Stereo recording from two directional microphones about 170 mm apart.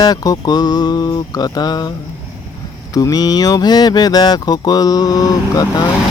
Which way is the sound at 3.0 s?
20° left (ahead or behind).